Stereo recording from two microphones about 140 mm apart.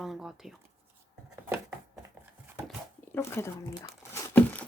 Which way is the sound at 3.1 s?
15° left (ahead or behind).